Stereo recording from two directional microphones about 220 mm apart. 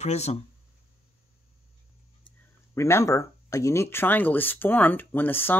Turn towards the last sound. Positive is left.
turn(degrees=10)  # may be behind; listen again after turning